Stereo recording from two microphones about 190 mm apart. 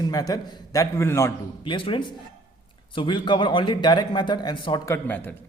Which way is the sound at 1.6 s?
25° left (ahead or behind).